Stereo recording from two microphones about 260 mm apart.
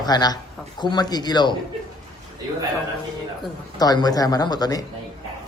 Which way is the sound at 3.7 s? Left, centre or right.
Centre.